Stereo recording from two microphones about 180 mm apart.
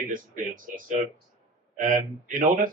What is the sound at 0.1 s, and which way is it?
Speech, 50° right (ahead or behind).